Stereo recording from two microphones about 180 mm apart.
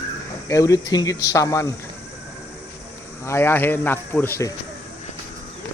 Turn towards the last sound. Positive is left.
turn(degrees=15)  # may be behind; listen again after turning